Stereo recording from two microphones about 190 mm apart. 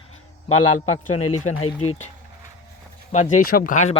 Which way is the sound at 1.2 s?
35° left (ahead or behind).